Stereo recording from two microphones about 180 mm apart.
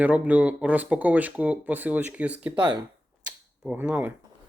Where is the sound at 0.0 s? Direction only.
10° right (ahead or behind).